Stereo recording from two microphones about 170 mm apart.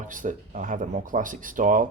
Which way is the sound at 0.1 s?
50° right (ahead or behind).